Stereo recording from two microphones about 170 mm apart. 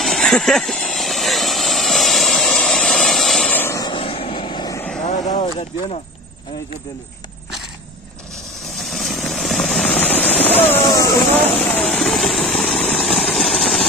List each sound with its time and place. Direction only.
0.0 s vehicle: centre (ahead or behind); by 4.8 s 25° left (ahead or behind)
5.0 s a sound: 45° left (ahead or behind)
8.6 s vehicle: centre (ahead or behind)
10.6 s a sound: 10° left (ahead or behind)
11.5 s vehicle: 10° left (ahead or behind)
13.3 s engine: 5° left (ahead or behind)